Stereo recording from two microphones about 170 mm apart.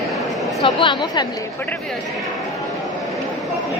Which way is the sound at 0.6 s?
25° left (ahead or behind).